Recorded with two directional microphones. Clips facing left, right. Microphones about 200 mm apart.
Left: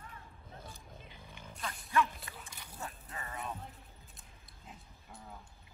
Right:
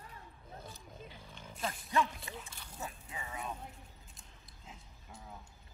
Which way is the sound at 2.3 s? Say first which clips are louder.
Right 5 dB; 25° right (ahead or behind).